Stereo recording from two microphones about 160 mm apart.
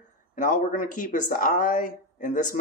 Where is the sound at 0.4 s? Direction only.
55° left (ahead or behind).